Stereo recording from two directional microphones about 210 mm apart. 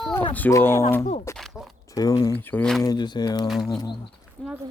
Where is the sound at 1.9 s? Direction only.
15° left (ahead or behind).